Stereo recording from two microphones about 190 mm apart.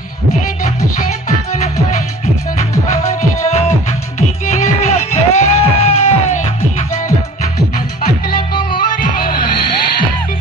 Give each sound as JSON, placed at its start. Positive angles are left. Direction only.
{"t": 4.8, "sound": "music", "side_deg": 35}